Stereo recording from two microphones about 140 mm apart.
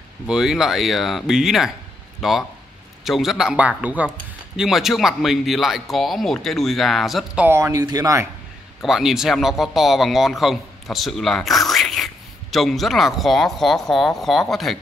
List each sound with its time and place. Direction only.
0.3 s speech: 5° right (ahead or behind)
7.4 s speech: 20° right (ahead or behind)
8.8 s speech: 5° right (ahead or behind)